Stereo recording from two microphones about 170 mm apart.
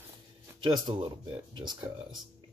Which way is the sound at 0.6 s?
30° right (ahead or behind).